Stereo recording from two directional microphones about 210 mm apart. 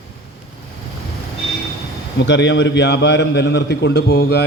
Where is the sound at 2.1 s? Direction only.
55° left (ahead or behind).